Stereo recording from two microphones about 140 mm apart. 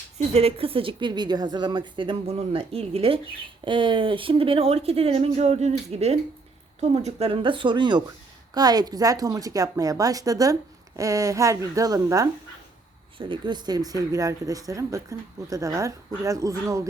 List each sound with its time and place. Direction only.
0.3 s a woman's voice: 45° right (ahead or behind); by 12.3 s 25° right (ahead or behind)
13.1 s a woman's voice: 35° right (ahead or behind)